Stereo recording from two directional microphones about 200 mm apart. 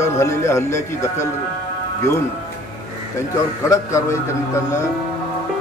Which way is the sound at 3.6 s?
15° left (ahead or behind).